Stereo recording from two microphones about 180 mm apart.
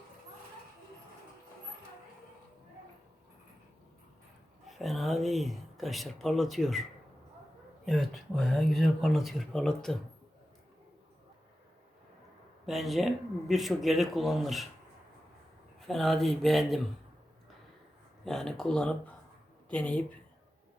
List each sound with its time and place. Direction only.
4.6 s speech: centre (ahead or behind)
7.9 s speech: centre (ahead or behind)
12.6 s speech: centre (ahead or behind)
15.9 s speech: centre (ahead or behind)
18.3 s speech: 5° left (ahead or behind)